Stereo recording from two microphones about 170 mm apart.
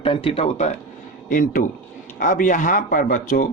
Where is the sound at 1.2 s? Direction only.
55° left (ahead or behind).